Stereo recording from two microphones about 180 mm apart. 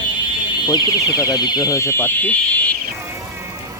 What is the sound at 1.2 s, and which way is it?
Speech, 20° left (ahead or behind).